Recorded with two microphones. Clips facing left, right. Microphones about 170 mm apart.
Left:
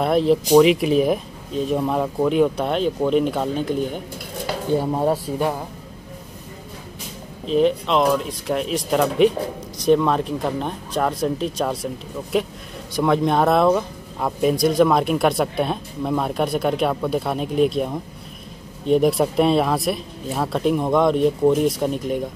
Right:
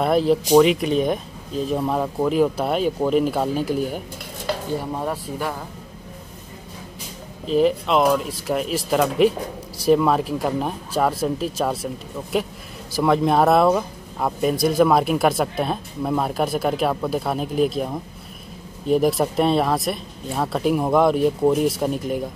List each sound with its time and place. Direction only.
0.0 s speech: centre (ahead or behind)
4.9 s speech: 25° left (ahead or behind)
7.4 s speech: centre (ahead or behind)